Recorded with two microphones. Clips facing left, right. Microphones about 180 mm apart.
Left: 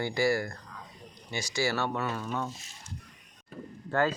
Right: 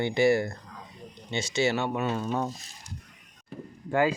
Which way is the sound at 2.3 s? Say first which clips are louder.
Right 4 dB; 35° right (ahead or behind).